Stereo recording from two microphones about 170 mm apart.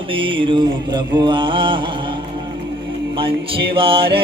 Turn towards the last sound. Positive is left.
turn(degrees=-30)  # may be behind; listen again after turning